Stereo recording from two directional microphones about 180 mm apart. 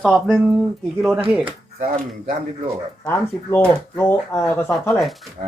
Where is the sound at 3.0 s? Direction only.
15° left (ahead or behind).